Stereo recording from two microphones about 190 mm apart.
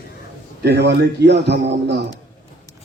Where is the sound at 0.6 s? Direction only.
60° right (ahead or behind).